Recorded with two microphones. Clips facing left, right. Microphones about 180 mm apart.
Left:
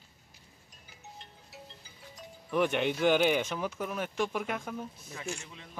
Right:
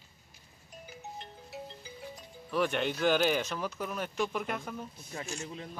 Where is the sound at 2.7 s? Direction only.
10° left (ahead or behind).